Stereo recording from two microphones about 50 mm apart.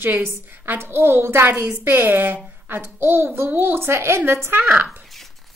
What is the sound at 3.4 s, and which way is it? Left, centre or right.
A woman's voice, right.